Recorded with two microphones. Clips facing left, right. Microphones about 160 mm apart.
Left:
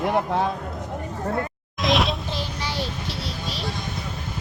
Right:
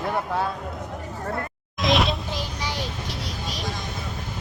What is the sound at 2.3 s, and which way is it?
Child singing, 15° right (ahead or behind).